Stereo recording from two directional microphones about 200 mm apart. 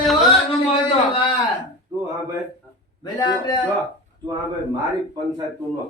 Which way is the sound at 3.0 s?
20° left (ahead or behind).